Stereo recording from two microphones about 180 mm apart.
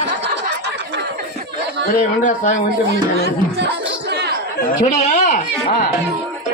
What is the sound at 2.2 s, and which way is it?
Speech, 45° left (ahead or behind).